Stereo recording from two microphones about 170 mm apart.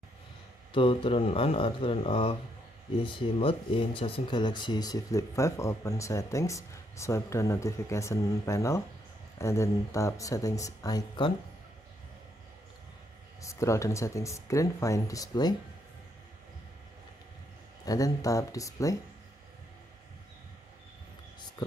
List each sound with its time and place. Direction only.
0.7 s speech: 30° left (ahead or behind)
13.4 s speech: 20° left (ahead or behind)
17.8 s speech: 20° left (ahead or behind)
21.4 s whispering: 25° left (ahead or behind)